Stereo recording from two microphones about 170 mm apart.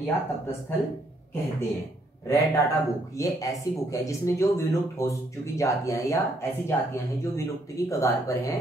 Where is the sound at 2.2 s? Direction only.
20° left (ahead or behind).